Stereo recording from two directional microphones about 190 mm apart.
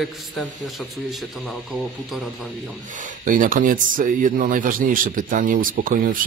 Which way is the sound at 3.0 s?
45° right (ahead or behind).